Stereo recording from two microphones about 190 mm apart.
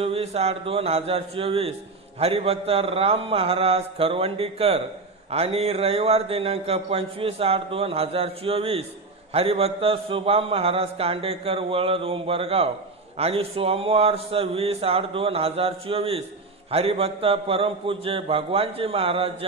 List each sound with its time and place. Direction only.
0.0 s a man's voice: 30° right (ahead or behind)